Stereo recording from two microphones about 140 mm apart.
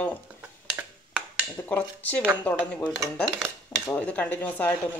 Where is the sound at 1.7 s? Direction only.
10° left (ahead or behind).